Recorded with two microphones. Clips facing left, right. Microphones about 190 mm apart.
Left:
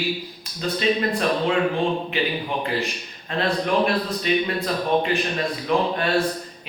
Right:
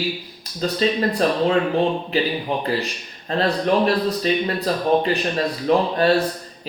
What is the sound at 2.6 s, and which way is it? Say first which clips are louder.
A man's voice: right 2 dB; 35° right (ahead or behind).